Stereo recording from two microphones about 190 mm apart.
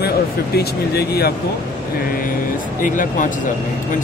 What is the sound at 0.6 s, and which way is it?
Speech, 55° left (ahead or behind).